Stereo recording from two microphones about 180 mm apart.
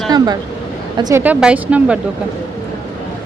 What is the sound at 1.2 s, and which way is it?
Speech, 5° right (ahead or behind).